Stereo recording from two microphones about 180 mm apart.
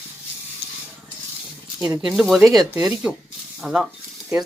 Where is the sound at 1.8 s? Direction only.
20° right (ahead or behind).